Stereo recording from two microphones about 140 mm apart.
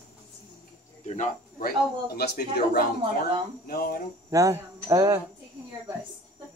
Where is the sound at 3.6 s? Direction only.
90° left.